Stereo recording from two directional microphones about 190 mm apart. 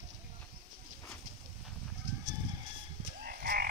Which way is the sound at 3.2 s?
50° right (ahead or behind).